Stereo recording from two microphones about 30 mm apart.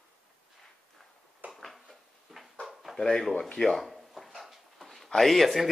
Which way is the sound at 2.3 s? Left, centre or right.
Centre.